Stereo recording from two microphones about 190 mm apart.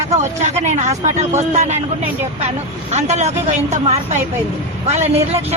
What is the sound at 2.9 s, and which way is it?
A man's voice, 35° right (ahead or behind).